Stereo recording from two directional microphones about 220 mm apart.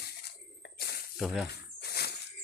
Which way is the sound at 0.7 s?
45° left (ahead or behind).